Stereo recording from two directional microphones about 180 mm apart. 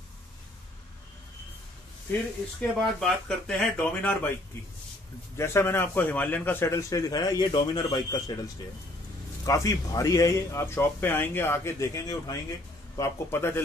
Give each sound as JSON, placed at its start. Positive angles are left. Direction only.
{"t": 2.1, "sound": "a man's voice", "side_deg": 10}
{"t": 5.4, "sound": "a man's voice", "side_deg": 15}
{"t": 9.5, "sound": "a man's voice", "side_deg": 20}